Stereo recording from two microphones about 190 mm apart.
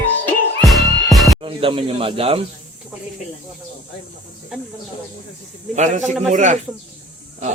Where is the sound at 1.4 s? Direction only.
30° right (ahead or behind).